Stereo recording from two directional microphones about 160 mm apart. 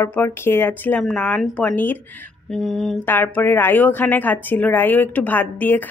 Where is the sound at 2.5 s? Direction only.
5° left (ahead or behind).